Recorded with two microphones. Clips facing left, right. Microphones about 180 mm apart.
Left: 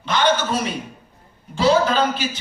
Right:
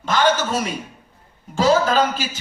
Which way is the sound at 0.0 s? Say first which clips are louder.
Right 1 dB; 45° right (ahead or behind).